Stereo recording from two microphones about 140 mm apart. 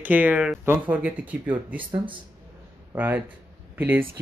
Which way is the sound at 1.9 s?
35° right (ahead or behind).